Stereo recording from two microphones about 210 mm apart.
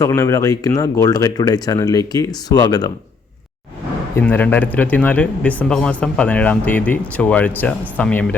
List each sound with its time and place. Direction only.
0.0 s speech: 15° left (ahead or behind)
4.1 s speech: 10° left (ahead or behind)